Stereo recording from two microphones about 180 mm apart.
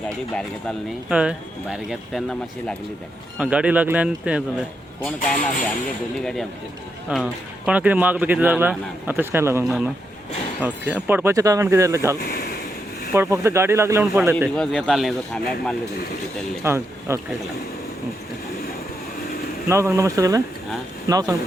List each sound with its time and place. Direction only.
1.1 s speech: 5° right (ahead or behind)
3.3 s speech: 5° right (ahead or behind)
5.3 s speech: 45° left (ahead or behind)
7.1 s speech: 5° right (ahead or behind)
9.6 s speech: centre (ahead or behind)
13.1 s speech: 15° right (ahead or behind); by 15.7 s centre (ahead or behind)
16.6 s speech: 15° right (ahead or behind)
19.6 s speech: 15° right (ahead or behind)